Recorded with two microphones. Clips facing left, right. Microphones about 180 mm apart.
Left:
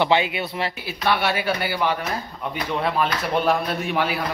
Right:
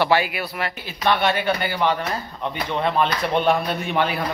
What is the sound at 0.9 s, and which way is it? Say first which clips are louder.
A man's voice: right 3 dB; 10° left (ahead or behind).